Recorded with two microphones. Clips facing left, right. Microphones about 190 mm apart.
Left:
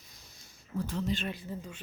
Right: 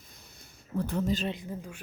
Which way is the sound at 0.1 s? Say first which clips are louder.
Right 4 dB; 55° right (ahead or behind).